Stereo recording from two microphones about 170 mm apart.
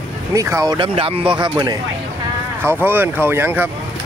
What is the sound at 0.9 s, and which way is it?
Speech, 35° right (ahead or behind).